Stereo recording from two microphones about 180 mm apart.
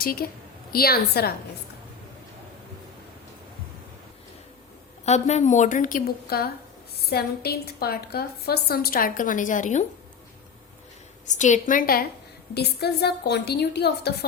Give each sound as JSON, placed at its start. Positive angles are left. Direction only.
{"t": 0.0, "sound": "a woman's voice", "side_deg": 55}
{"t": 5.0, "sound": "a woman's voice", "side_deg": 40}
{"t": 11.3, "sound": "a woman's voice", "side_deg": 45}
{"t": 12.5, "sound": "a woman's voice", "side_deg": 65}